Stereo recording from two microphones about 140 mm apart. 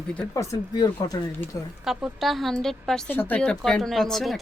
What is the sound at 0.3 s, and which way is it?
Speech, 20° left (ahead or behind).